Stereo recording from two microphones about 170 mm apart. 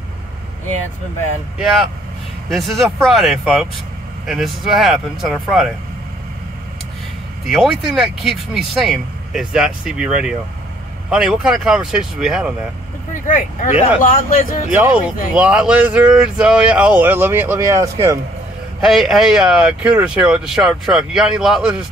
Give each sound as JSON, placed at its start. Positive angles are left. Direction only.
{"t": 2.5, "sound": "speech", "side_deg": 0}
{"t": 7.4, "sound": "speech", "side_deg": 0}
{"t": 13.1, "sound": "speech", "side_deg": 50}
{"t": 14.7, "sound": "speech", "side_deg": -10}
{"t": 18.8, "sound": "speech", "side_deg": 0}